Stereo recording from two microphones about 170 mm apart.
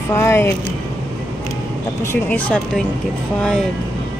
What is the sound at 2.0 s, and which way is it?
Speech, 10° left (ahead or behind).